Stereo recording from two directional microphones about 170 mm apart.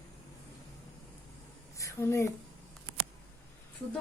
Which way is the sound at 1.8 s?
15° left (ahead or behind).